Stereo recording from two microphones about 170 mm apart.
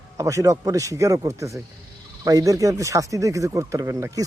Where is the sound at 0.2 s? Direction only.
20° right (ahead or behind).